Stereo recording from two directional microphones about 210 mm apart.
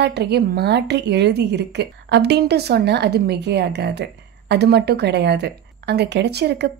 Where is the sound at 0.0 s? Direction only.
50° right (ahead or behind).